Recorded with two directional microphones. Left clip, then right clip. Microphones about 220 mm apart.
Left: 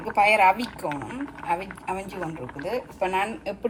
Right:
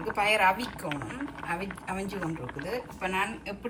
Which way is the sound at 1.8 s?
10° right (ahead or behind).